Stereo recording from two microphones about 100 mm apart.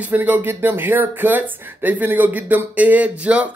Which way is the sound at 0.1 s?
20° right (ahead or behind).